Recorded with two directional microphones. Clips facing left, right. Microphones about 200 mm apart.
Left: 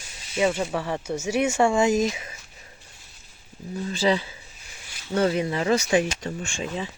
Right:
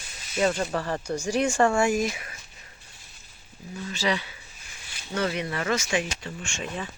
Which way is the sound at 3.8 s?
30° left (ahead or behind).